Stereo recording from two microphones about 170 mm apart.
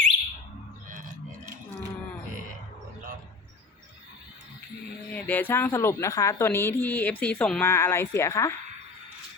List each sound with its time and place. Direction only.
0.9 s a sound: 50° right (ahead or behind)
5.1 s a woman's voice: 10° left (ahead or behind)
7.6 s a woman's voice: 15° left (ahead or behind)